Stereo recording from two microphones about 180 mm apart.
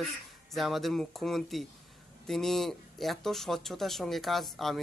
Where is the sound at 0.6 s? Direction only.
Centre (ahead or behind).